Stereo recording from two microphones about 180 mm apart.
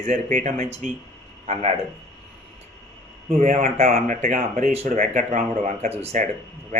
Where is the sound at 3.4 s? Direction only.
45° right (ahead or behind).